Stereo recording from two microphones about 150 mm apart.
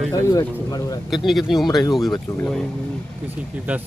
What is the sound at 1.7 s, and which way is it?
Speech, 25° left (ahead or behind).